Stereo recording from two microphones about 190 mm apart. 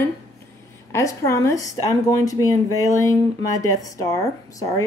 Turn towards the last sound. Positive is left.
turn(degrees=15)  # may be behind; listen again after turning